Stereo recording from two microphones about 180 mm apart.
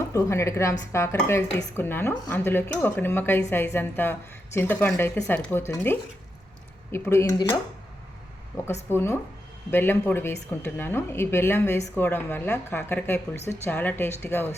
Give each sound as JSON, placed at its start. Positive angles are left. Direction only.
{"t": 0.1, "sound": "speech", "side_deg": 15}